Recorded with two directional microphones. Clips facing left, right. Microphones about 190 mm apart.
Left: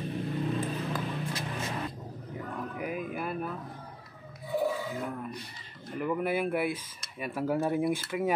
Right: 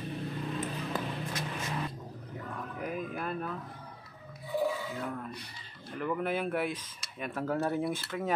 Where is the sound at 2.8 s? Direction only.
5° left (ahead or behind).